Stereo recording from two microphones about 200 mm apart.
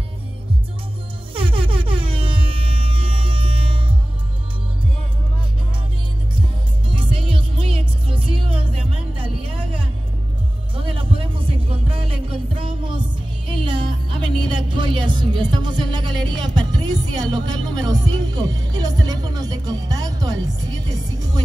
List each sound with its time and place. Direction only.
1.3 s air horn: 25° right (ahead or behind)
6.9 s music: 25° right (ahead or behind)
10.7 s music: 25° right (ahead or behind)